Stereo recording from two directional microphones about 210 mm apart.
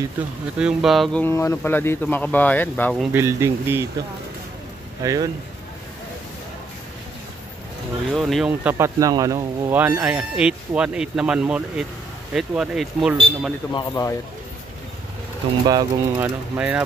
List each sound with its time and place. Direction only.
0.6 s speech: centre (ahead or behind)
3.1 s speech: 10° right (ahead or behind)
5.0 s speech: 15° right (ahead or behind)
8.1 s speech: centre (ahead or behind)
13.7 s speech: 20° left (ahead or behind)
15.6 s speech: 20° right (ahead or behind)
16.5 s speech: 5° right (ahead or behind)